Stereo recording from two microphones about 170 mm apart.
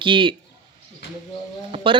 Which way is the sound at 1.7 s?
30° right (ahead or behind).